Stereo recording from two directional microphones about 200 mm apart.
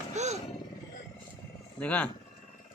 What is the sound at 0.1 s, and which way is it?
Roar, 35° right (ahead or behind).